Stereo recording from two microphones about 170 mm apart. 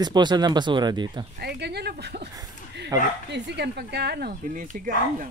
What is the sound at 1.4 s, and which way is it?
Speech, 75° right (ahead or behind).